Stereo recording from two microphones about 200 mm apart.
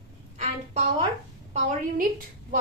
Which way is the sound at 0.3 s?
35° right (ahead or behind).